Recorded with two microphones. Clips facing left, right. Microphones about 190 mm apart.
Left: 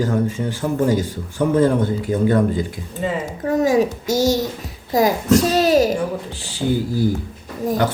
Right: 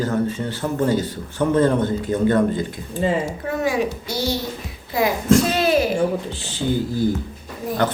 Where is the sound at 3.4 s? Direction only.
40° left (ahead or behind).